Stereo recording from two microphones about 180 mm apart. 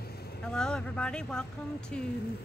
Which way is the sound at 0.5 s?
5° left (ahead or behind).